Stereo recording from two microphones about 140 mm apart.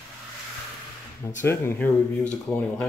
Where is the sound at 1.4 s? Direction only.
20° left (ahead or behind).